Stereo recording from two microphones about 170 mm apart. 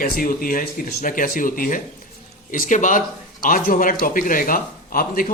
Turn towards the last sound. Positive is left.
turn(degrees=55)  # may be behind; listen again after turning